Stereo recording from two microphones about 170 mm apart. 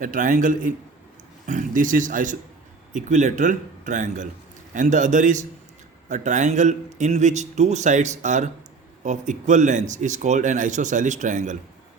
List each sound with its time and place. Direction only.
0.0 s speech: 50° right (ahead or behind)